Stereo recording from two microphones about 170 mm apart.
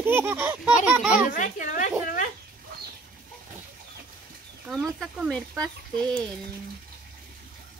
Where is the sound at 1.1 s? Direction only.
50° left (ahead or behind).